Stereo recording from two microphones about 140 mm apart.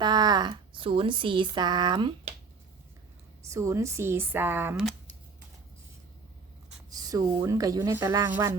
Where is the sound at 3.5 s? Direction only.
20° right (ahead or behind).